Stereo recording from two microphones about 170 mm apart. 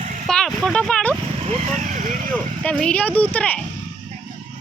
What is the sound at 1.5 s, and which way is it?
Speech, 35° right (ahead or behind).